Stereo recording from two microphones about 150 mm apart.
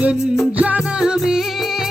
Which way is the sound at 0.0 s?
10° right (ahead or behind).